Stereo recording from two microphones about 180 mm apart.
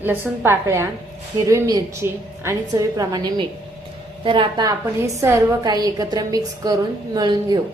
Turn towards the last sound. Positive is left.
turn(degrees=-20)  # may be behind; listen again after turning